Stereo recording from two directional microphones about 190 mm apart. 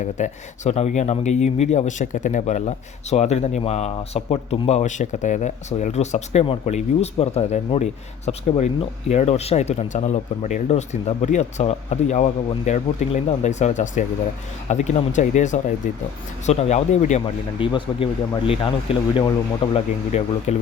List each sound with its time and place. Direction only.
0.0 s speech: 40° left (ahead or behind)
17.6 s speech: 30° left (ahead or behind)
19.7 s speech: 35° left (ahead or behind)